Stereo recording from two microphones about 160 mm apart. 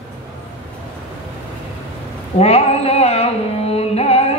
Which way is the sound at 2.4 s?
40° left (ahead or behind).